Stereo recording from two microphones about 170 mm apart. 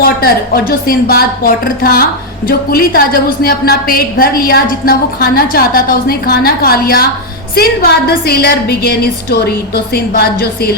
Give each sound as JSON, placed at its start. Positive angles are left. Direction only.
{"t": 0.0, "sound": "a woman's voice", "side_deg": 60}